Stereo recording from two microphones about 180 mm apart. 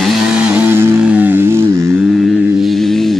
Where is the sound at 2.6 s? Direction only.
Centre (ahead or behind).